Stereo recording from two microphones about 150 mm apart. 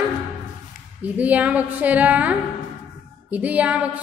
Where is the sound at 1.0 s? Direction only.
10° right (ahead or behind).